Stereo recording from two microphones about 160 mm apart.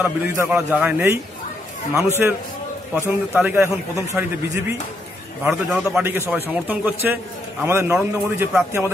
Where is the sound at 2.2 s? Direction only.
10° right (ahead or behind).